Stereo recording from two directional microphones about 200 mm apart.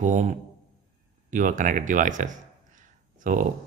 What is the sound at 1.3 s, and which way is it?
Speech, 40° right (ahead or behind).